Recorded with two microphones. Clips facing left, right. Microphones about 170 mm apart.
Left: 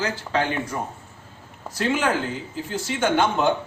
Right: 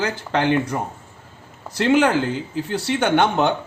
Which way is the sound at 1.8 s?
70° right (ahead or behind).